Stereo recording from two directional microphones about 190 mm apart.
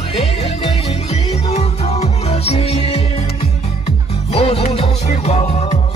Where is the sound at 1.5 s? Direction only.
35° left (ahead or behind).